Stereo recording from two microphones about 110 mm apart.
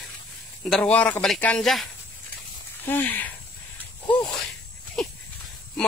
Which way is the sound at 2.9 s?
15° left (ahead or behind).